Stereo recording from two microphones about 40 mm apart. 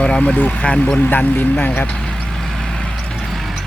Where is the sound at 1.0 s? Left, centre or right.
Left.